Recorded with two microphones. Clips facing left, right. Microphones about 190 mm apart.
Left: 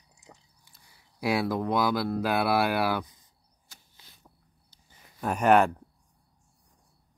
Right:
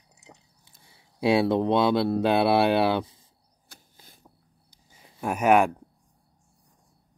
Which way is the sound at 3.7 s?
50° right (ahead or behind).